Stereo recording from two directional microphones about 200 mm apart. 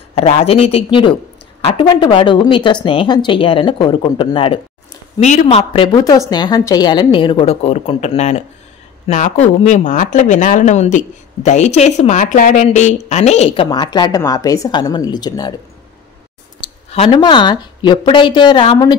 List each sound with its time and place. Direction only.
0.1 s a woman's voice: 30° left (ahead or behind)
5.2 s a woman's voice: 35° left (ahead or behind); by 15.5 s 20° left (ahead or behind)
16.6 s a woman's voice: 25° left (ahead or behind)